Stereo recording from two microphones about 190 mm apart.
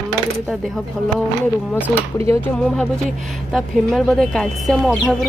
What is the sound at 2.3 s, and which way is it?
A woman's voice, 5° left (ahead or behind).